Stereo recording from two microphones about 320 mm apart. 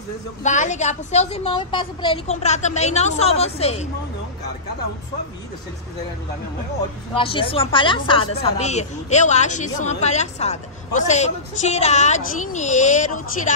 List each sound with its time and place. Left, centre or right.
0.4 s a woman's voice: left
7.2 s a woman's voice: centre